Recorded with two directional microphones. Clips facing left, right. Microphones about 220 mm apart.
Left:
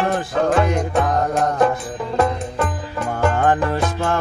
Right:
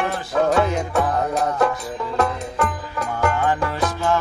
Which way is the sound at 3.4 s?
55° left (ahead or behind).